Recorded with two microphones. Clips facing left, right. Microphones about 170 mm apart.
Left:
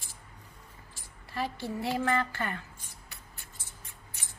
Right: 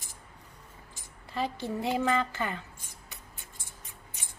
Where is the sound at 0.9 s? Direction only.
20° right (ahead or behind).